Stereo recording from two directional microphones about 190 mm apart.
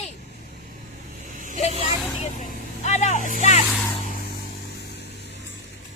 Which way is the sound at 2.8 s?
35° left (ahead or behind).